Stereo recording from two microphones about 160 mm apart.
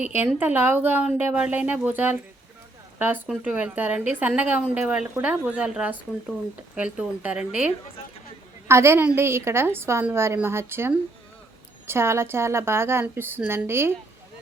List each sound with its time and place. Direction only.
0.3 s a woman's voice: 10° right (ahead or behind)